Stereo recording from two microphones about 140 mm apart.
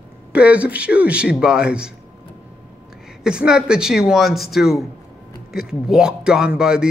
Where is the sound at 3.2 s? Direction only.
5° right (ahead or behind).